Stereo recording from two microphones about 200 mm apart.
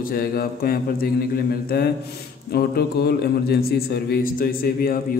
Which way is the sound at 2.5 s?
50° left (ahead or behind).